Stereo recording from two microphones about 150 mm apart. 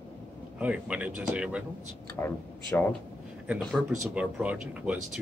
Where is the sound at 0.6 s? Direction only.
10° right (ahead or behind).